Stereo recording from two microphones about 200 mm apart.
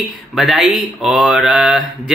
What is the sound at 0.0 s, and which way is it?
Mantra, centre (ahead or behind).